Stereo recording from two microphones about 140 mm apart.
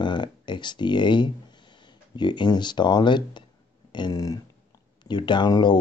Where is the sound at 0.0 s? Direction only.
35° left (ahead or behind).